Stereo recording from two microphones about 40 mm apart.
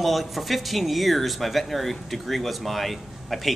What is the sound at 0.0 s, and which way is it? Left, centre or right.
Speech, centre.